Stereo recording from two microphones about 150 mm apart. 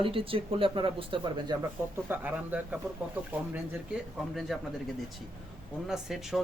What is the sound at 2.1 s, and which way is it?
Speech, 10° right (ahead or behind).